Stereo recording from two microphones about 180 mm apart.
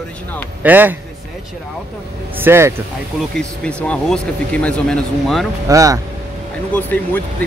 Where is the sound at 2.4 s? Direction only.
15° right (ahead or behind).